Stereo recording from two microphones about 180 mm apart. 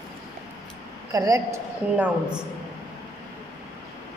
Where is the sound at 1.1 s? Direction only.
20° right (ahead or behind).